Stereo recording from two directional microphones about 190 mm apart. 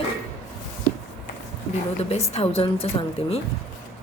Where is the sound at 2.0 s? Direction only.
35° left (ahead or behind).